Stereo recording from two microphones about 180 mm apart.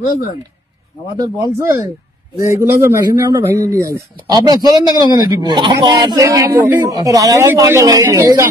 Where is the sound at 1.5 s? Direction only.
15° right (ahead or behind).